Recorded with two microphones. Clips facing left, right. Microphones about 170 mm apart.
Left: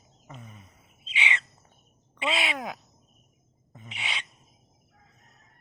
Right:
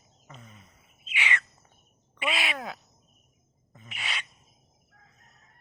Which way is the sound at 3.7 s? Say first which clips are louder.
Left 2 dB; 20° left (ahead or behind).